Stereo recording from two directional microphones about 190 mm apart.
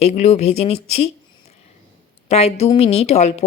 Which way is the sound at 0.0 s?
35° left (ahead or behind).